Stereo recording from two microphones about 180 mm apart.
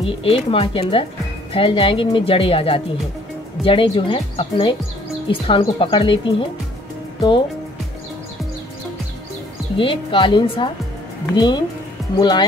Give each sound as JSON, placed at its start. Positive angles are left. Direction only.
{"t": 0.0, "sound": "speech", "side_deg": 30}
{"t": 9.8, "sound": "speech", "side_deg": 30}